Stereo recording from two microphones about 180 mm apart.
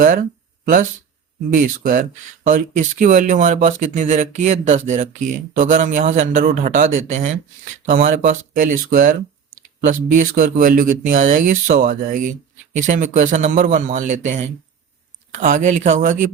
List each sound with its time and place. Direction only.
0.0 s speech: 45° right (ahead or behind)